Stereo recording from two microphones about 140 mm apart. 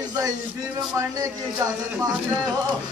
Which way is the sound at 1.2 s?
25° right (ahead or behind).